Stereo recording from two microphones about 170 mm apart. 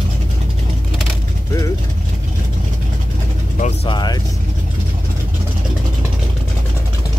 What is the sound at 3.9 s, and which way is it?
Vehicle, 25° left (ahead or behind).